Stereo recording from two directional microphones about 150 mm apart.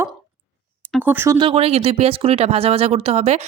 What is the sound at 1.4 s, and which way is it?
Speech, 40° right (ahead or behind).